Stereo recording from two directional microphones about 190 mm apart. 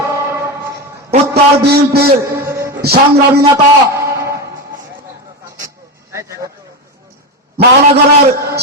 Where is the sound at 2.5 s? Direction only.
15° right (ahead or behind).